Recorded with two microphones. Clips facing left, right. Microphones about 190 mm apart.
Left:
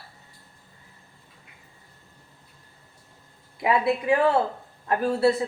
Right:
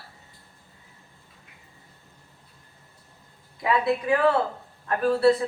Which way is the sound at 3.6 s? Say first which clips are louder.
Left 1 dB; 25° left (ahead or behind).